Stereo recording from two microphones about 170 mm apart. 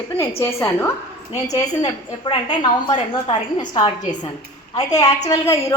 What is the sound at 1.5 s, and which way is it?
A woman's voice, 25° left (ahead or behind).